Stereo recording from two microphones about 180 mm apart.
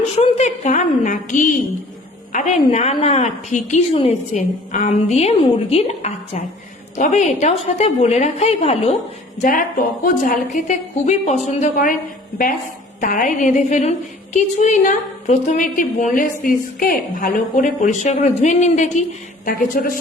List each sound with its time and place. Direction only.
0.2 s a woman's voice: 35° left (ahead or behind)
9.4 s a woman's voice: 50° left (ahead or behind)
13.0 s a woman's voice: 45° left (ahead or behind)
19.5 s a woman's voice: 50° left (ahead or behind)